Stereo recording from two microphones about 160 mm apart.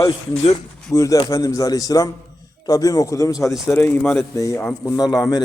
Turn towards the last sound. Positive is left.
turn(degrees=25)  # may be behind; listen again after turning